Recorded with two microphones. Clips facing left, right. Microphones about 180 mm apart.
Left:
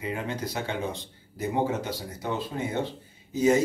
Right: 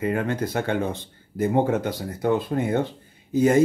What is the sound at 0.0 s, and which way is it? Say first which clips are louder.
Speech: right 7 dB; 55° right (ahead or behind).